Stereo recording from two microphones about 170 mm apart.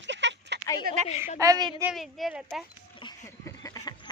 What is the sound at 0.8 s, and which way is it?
Speech, 45° right (ahead or behind).